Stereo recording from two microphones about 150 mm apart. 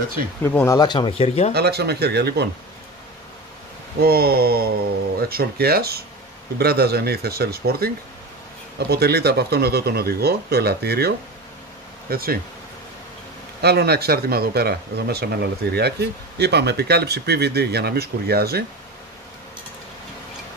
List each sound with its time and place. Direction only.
0.4 s speech: 15° left (ahead or behind)
0.7 s speech: 30° left (ahead or behind)
1.5 s speech: 90° right
4.0 s speech: 90° right
13.6 s speech: 90° right